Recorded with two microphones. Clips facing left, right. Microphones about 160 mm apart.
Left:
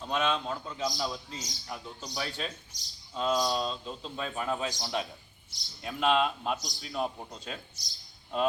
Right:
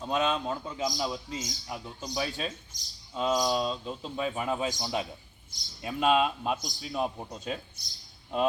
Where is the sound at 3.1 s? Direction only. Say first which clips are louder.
Right 2 dB; 5° right (ahead or behind).